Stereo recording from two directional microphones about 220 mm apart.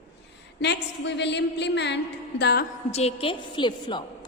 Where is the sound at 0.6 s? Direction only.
50° left (ahead or behind).